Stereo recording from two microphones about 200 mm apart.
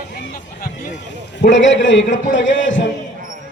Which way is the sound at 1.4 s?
65° left (ahead or behind).